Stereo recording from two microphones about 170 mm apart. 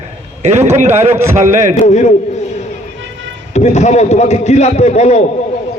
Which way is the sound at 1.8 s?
45° left (ahead or behind).